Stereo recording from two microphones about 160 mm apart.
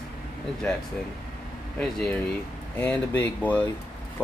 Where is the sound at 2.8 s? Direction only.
10° left (ahead or behind).